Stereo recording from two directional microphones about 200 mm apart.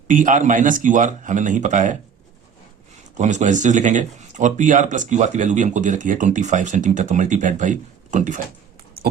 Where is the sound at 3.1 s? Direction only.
35° right (ahead or behind).